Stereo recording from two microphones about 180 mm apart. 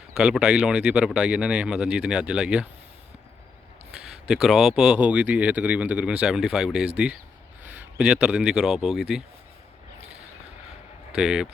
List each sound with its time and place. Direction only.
0.2 s speech: 5° right (ahead or behind)
4.3 s speech: centre (ahead or behind)
10.0 s a sound: 35° right (ahead or behind)
11.1 s speech: 5° right (ahead or behind)